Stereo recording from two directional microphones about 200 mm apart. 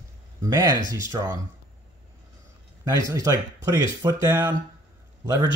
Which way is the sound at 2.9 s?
15° right (ahead or behind).